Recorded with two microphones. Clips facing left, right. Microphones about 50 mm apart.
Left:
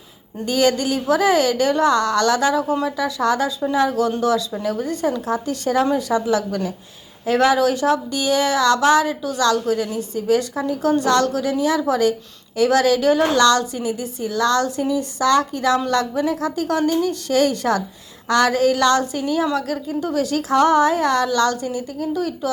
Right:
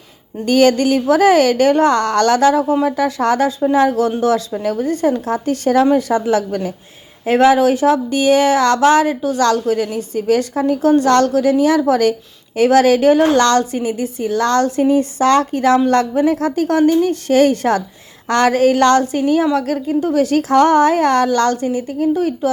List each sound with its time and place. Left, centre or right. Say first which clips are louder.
0.4 s a woman's voice: right 6 dB; right